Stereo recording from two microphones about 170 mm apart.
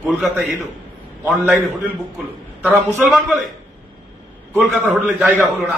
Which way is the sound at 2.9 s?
Centre (ahead or behind).